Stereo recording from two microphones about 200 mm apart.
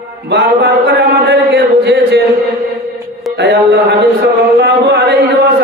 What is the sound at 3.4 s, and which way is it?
Speech, 60° right (ahead or behind).